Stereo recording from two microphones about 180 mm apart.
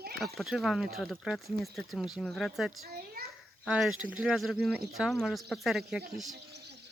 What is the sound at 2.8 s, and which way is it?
Children playing, 60° right (ahead or behind).